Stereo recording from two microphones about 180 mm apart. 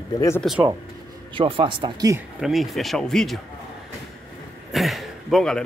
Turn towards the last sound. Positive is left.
turn(degrees=0)  # may be behind; listen again after turning